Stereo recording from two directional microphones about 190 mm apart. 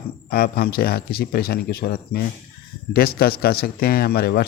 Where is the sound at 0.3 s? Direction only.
55° left (ahead or behind).